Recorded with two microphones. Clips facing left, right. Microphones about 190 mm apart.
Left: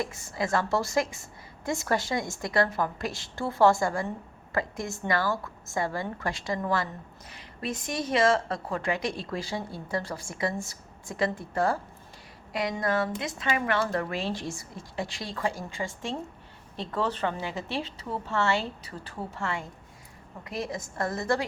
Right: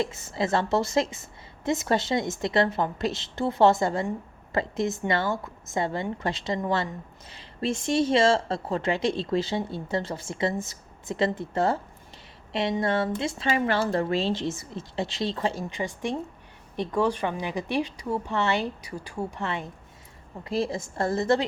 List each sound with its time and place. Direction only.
0.0 s a woman's voice: 25° right (ahead or behind)
20.4 s a woman's voice: 30° right (ahead or behind)